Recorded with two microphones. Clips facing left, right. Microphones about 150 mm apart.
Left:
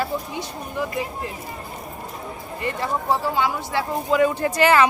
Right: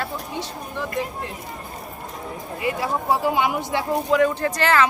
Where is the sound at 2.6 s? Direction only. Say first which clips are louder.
Right 1 dB; 5° right (ahead or behind).